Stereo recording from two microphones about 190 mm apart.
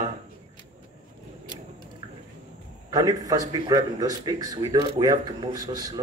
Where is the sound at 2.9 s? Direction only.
20° right (ahead or behind).